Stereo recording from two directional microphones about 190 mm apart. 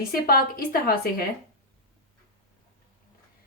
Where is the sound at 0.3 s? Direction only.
50° left (ahead or behind).